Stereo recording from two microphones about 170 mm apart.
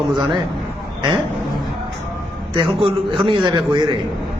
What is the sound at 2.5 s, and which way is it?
A man's voice, 30° right (ahead or behind).